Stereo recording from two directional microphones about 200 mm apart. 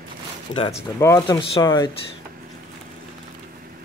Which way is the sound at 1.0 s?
20° left (ahead or behind).